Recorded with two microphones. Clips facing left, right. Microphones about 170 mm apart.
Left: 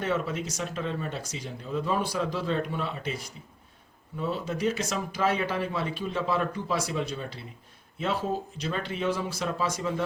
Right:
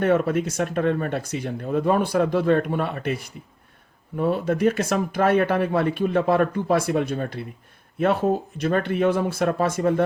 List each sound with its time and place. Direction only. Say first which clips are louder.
0.0 s speech: right 9 dB; 55° right (ahead or behind)